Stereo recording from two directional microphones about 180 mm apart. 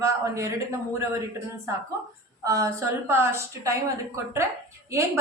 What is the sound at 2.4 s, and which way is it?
A woman's voice, 20° right (ahead or behind).